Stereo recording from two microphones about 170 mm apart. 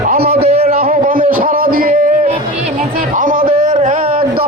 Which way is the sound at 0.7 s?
55° right (ahead or behind).